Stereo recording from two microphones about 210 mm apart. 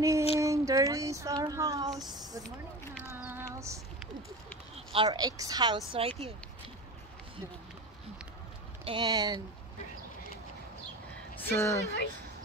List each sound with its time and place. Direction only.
0.0 s child singing: 15° right (ahead or behind)
2.0 s speech: 20° right (ahead or behind)
3.0 s a sound: 10° right (ahead or behind)
4.7 s speech: 25° right (ahead or behind)
8.8 s speech: 20° right (ahead or behind)
11.4 s a woman's voice: 10° left (ahead or behind)